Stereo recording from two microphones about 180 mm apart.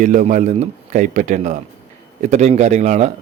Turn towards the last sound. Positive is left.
turn(degrees=-40)  # may be behind; listen again after turning